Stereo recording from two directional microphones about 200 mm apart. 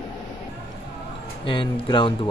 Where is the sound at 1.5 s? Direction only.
25° left (ahead or behind).